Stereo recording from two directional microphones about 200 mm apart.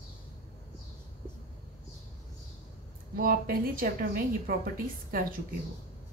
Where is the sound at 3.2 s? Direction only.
45° right (ahead or behind).